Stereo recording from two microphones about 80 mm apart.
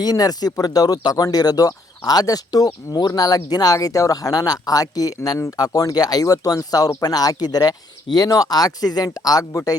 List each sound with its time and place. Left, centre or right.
0.0 s speech: left
9.5 s speech: left